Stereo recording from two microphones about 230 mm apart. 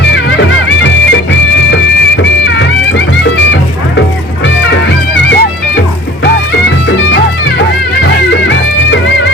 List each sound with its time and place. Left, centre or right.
0.0 s music: left
5.1 s music: left
6.8 s music: left
8.3 s music: left